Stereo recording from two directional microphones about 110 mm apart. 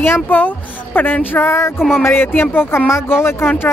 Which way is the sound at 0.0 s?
20° left (ahead or behind).